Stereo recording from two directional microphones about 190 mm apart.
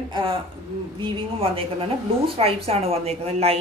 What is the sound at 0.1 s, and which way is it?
A woman's voice, 25° right (ahead or behind).